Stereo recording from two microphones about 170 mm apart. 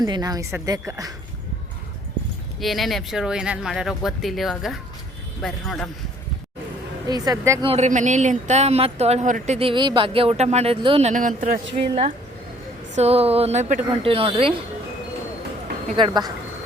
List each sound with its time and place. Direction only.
0.0 s speech: 25° right (ahead or behind)
2.6 s speech: centre (ahead or behind)
7.1 s speech: 20° right (ahead or behind)
7.6 s speech: 40° right (ahead or behind)
9.6 s speech: 30° right (ahead or behind)
11.1 s speech: 50° right (ahead or behind)
11.8 s speech: 35° right (ahead or behind)
16.0 s speech: 25° right (ahead or behind)